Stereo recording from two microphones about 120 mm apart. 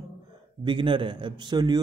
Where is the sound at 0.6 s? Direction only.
45° right (ahead or behind).